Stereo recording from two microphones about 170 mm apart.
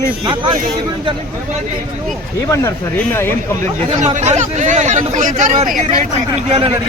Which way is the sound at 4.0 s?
40° right (ahead or behind).